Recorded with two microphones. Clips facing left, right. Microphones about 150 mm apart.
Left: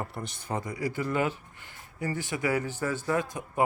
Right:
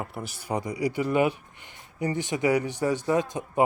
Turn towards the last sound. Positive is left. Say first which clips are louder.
# right 4 dB
turn(degrees=-20)  # may be behind; listen again after turning